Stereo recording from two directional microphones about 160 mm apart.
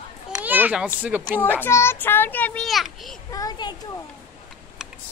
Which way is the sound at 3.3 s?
25° left (ahead or behind).